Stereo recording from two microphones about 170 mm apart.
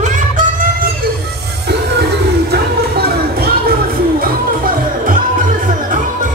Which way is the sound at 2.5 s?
65° right (ahead or behind).